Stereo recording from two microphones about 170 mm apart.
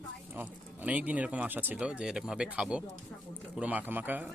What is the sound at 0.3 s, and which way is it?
Speech, 10° right (ahead or behind).